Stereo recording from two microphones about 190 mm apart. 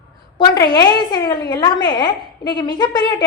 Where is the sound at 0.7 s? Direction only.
20° left (ahead or behind).